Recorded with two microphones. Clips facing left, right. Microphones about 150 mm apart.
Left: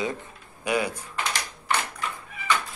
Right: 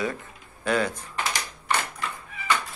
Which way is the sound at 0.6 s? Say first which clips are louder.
Right 1 dB; 10° left (ahead or behind).